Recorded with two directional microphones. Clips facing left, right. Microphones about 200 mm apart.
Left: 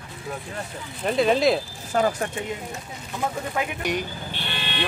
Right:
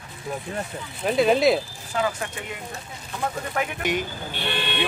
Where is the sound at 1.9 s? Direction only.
40° left (ahead or behind).